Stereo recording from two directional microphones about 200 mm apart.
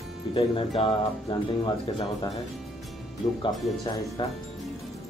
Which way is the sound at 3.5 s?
Centre (ahead or behind).